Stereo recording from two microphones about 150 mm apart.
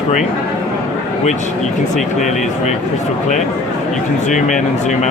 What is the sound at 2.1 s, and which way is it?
Speech, 55° left (ahead or behind).